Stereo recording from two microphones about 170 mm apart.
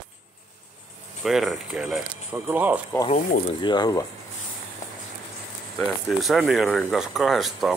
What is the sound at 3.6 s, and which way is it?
Speech, 25° left (ahead or behind).